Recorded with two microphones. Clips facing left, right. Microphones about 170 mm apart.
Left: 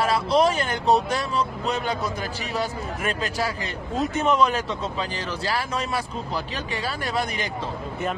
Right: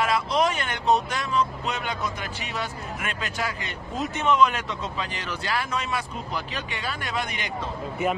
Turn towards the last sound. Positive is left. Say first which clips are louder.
# left 4 dB
turn(degrees=35)  # may be behind; listen again after turning